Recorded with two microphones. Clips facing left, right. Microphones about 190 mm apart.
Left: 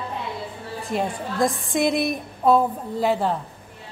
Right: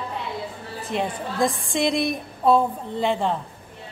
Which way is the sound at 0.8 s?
Centre (ahead or behind).